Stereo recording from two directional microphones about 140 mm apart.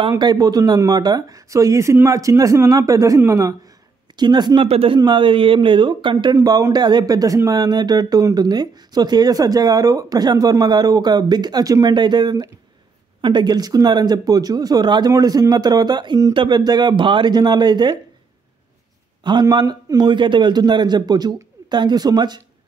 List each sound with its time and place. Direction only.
0.2 s a man's voice: 30° right (ahead or behind)
4.6 s a man's voice: 40° right (ahead or behind)
6.3 s a man's voice: 20° right (ahead or behind)
19.2 s a man's voice: 30° right (ahead or behind)